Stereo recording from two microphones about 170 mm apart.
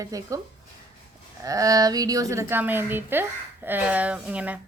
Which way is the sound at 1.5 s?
20° right (ahead or behind).